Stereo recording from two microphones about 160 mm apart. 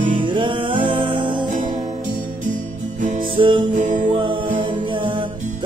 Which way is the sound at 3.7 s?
50° right (ahead or behind).